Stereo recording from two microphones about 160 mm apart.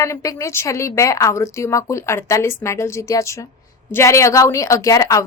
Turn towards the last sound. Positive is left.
turn(degrees=20)  # may be behind; listen again after turning